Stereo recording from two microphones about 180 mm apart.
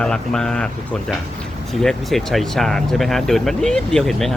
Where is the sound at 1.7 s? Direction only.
Centre (ahead or behind).